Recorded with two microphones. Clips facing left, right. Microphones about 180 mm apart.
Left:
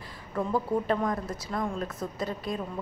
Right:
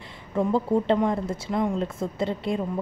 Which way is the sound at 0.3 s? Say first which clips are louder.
Right 5 dB; 25° right (ahead or behind).